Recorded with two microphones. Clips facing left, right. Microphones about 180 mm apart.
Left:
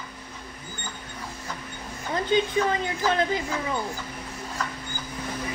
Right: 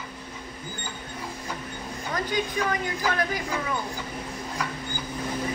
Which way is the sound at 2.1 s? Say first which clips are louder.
Left 5 dB; 25° left (ahead or behind).